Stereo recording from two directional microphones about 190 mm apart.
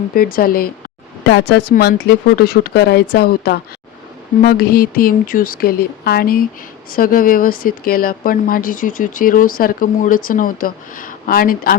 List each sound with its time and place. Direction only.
0.1 s speech: 50° left (ahead or behind)
1.2 s speech: 65° left (ahead or behind); by 11.8 s 50° left (ahead or behind)